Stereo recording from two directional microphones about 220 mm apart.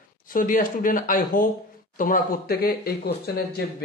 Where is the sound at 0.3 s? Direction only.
40° left (ahead or behind).